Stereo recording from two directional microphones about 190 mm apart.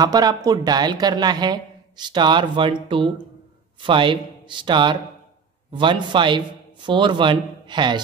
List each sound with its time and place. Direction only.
0.0 s speech: 20° right (ahead or behind)